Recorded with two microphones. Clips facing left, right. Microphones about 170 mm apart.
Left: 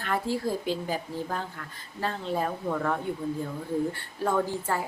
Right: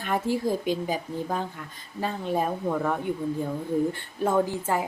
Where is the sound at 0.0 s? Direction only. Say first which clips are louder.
Right 3 dB; 15° right (ahead or behind).